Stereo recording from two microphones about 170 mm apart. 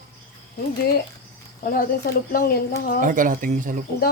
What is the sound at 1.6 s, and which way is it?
Speech, 55° left (ahead or behind).